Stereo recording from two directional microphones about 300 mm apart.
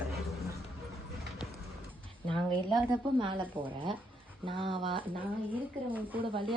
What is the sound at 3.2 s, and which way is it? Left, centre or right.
Speech, centre.